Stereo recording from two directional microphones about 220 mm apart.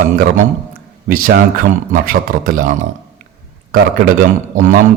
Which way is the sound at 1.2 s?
40° right (ahead or behind).